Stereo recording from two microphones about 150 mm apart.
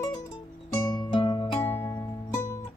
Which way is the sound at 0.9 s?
30° left (ahead or behind).